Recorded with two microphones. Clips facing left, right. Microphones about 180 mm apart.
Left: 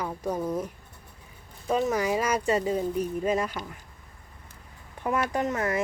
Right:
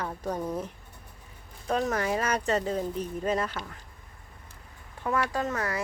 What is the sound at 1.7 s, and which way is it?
Speech, 5° left (ahead or behind).